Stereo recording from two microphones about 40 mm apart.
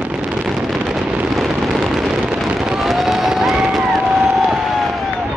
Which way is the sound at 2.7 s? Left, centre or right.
Centre.